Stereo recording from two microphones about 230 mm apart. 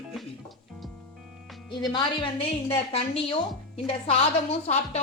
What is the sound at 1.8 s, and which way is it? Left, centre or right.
A woman's voice, centre.